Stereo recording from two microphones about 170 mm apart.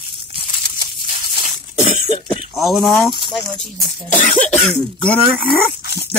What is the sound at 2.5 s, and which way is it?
Speech, centre (ahead or behind).